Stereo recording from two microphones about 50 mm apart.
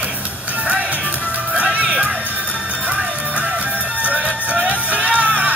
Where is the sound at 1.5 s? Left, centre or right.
Right.